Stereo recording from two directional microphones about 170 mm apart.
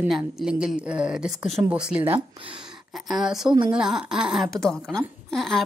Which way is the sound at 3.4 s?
30° right (ahead or behind).